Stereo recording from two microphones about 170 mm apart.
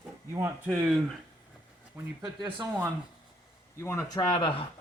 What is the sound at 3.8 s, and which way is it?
Speech, 15° left (ahead or behind).